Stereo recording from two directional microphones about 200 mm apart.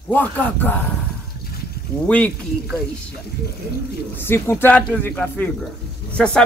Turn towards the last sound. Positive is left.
turn(degrees=5)  # may be behind; listen again after turning